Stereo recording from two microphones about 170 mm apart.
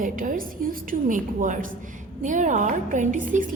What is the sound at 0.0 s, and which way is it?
A woman's voice, 55° right (ahead or behind).